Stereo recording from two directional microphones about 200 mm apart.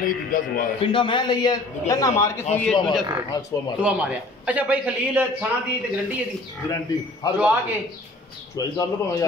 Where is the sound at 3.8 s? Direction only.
5° right (ahead or behind).